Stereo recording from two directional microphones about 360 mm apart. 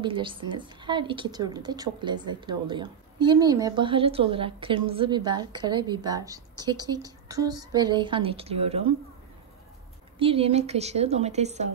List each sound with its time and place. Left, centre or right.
0.0 s a woman's voice: centre
10.1 s a woman's voice: centre